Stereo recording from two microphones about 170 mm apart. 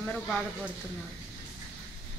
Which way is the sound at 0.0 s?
5° left (ahead or behind).